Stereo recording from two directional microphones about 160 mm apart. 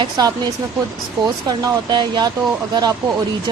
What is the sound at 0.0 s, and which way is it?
Speech, 25° right (ahead or behind).